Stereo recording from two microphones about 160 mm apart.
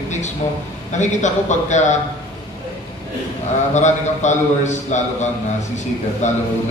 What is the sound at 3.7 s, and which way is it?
A man's voice, 50° left (ahead or behind).